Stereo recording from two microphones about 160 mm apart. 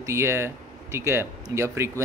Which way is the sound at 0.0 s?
15° right (ahead or behind).